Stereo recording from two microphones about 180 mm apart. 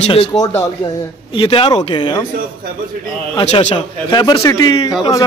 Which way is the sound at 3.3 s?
30° left (ahead or behind).